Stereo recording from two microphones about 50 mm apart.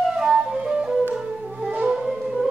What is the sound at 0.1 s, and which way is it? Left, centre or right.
Flute, centre.